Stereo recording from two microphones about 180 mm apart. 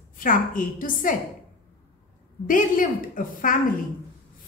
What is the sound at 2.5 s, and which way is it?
A woman's voice, 50° left (ahead or behind).